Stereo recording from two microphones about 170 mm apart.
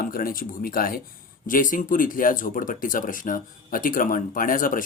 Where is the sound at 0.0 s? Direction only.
60° left (ahead or behind).